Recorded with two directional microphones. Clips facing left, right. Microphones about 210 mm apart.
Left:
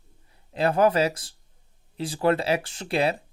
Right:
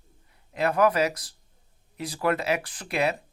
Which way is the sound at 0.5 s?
30° left (ahead or behind).